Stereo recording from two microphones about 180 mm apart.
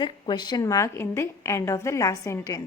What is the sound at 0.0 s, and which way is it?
A woman's voice, 25° left (ahead or behind).